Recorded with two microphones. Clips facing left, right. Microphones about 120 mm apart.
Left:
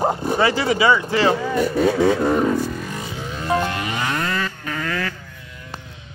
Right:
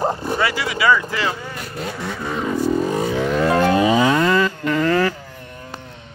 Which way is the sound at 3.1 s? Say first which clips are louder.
Right 2 dB; 75° right (ahead or behind).